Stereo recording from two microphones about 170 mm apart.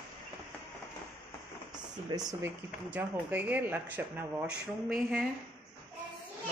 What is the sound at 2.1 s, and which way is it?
Speech, 20° right (ahead or behind).